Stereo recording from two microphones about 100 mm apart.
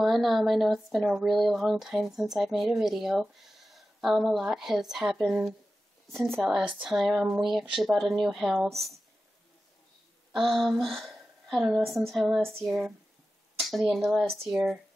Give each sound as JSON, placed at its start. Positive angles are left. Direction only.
{"t": 0.0, "sound": "speech", "side_deg": 0}
{"t": 6.1, "sound": "speech", "side_deg": -25}
{"t": 6.8, "sound": "speech", "side_deg": -5}
{"t": 10.3, "sound": "a woman's voice", "side_deg": 5}